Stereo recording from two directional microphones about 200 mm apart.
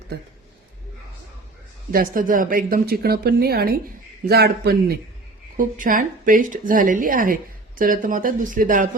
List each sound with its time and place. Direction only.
1.9 s a woman's voice: 45° right (ahead or behind)